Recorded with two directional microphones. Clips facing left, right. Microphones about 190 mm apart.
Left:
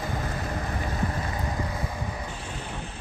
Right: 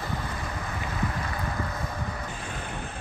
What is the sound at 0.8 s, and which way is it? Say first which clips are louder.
Boat: right 1 dB; 35° left (ahead or behind).